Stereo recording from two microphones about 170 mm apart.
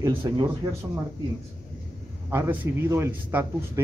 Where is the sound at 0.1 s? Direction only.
30° right (ahead or behind).